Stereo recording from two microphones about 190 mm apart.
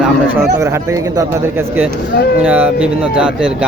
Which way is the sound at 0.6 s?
15° right (ahead or behind).